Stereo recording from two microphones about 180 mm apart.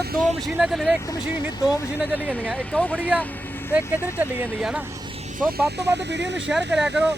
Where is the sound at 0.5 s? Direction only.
Centre (ahead or behind).